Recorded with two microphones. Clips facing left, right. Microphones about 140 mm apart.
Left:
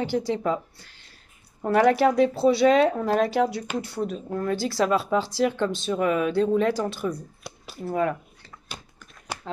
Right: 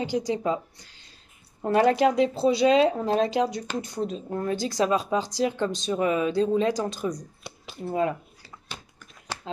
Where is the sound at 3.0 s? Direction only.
20° right (ahead or behind).